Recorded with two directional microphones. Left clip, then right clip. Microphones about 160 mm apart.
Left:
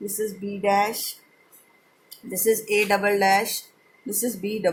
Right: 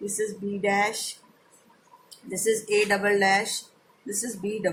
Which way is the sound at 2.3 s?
35° left (ahead or behind).